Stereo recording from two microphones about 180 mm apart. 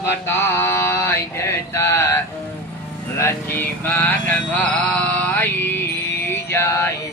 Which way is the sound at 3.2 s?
15° left (ahead or behind).